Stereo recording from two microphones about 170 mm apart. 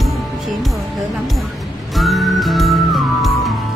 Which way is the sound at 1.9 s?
Centre (ahead or behind).